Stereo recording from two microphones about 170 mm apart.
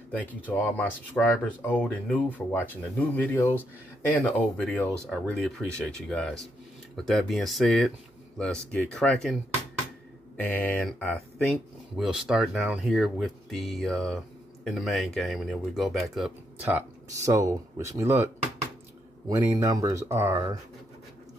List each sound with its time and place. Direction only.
0.5 s speech: 10° left (ahead or behind)
10.4 s speech: 10° left (ahead or behind)
16.6 s speech: 15° right (ahead or behind)
19.3 s speech: 15° right (ahead or behind)